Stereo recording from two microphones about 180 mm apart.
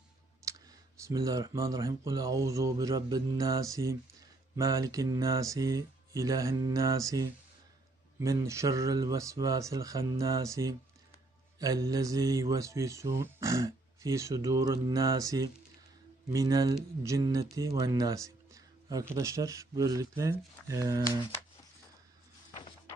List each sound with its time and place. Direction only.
0.5 s clicking: 20° right (ahead or behind)
1.0 s speech: 20° right (ahead or behind)